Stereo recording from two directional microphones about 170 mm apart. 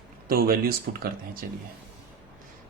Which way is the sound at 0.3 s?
60° right (ahead or behind).